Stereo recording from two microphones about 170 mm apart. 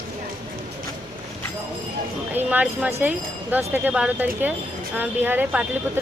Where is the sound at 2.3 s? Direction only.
10° right (ahead or behind).